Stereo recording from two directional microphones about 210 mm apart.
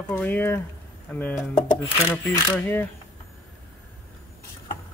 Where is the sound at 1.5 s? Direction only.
40° left (ahead or behind).